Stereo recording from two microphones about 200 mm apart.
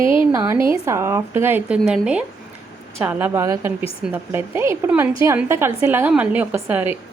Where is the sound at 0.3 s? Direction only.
15° right (ahead or behind).